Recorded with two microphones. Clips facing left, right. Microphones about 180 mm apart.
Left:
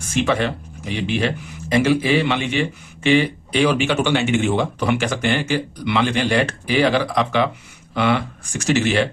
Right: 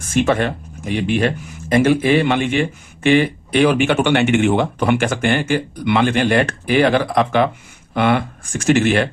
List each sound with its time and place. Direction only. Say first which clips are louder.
0.0 s speech: right 3 dB; 50° right (ahead or behind)